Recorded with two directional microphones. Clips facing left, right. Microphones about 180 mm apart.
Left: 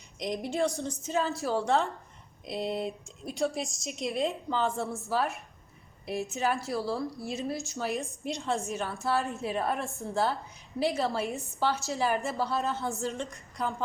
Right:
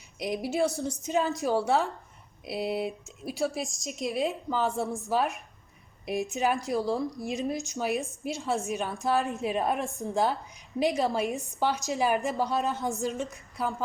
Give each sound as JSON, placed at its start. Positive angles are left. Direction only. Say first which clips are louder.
{"t": 0.2, "sound": "a woman's voice", "louder": "right 2 dB", "side_deg": -5}
{"t": 8.2, "sound": "a woman's voice", "louder": "right 1 dB", "side_deg": -5}
{"t": 8.7, "sound": "a woman's voice", "louder": "right 2 dB", "side_deg": -15}
{"t": 13.3, "sound": "a woman's voice", "louder": "right 1 dB", "side_deg": -5}